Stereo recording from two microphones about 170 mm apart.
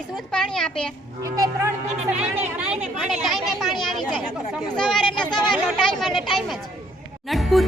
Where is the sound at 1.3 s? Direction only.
20° right (ahead or behind).